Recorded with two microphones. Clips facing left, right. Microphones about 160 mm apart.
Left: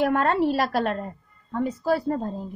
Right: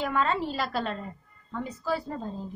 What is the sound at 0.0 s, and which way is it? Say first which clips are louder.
A woman's voice: left 6 dB; 60° left (ahead or behind).